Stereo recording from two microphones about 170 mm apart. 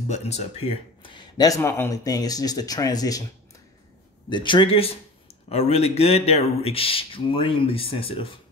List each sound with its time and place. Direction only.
0.1 s speech: 40° left (ahead or behind); by 3.3 s 20° left (ahead or behind)
4.3 s speech: 30° left (ahead or behind)